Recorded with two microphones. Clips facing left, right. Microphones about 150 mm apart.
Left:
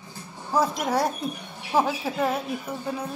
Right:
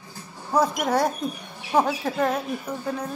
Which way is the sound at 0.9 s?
Centre (ahead or behind).